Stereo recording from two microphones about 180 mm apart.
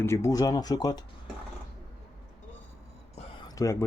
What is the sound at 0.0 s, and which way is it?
Speech, 15° left (ahead or behind).